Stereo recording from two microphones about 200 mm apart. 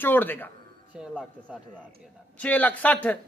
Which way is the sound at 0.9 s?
5° right (ahead or behind).